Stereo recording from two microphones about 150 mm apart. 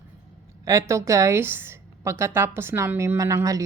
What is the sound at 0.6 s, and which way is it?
A woman's voice, 20° right (ahead or behind).